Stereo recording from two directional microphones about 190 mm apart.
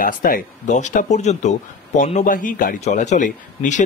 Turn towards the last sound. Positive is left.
turn(degrees=40)  # may be behind; listen again after turning